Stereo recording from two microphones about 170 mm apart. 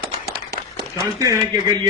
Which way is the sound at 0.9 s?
15° right (ahead or behind).